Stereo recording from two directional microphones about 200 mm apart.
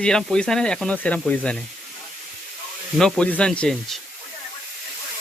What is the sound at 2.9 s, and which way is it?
Speech, 5° left (ahead or behind).